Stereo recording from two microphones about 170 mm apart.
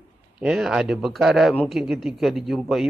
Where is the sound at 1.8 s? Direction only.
Centre (ahead or behind).